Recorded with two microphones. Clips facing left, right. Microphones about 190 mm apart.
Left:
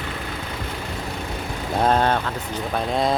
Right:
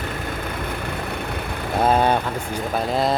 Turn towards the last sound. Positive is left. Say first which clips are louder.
# right 1 dB
turn(degrees=0)  # may be behind; listen again after turning